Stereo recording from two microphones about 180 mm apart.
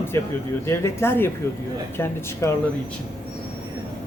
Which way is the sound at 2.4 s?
15° left (ahead or behind).